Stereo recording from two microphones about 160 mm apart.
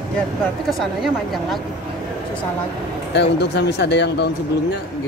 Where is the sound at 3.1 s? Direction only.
90° left.